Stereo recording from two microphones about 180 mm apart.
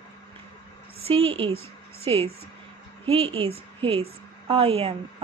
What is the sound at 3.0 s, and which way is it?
A woman's voice, 30° right (ahead or behind).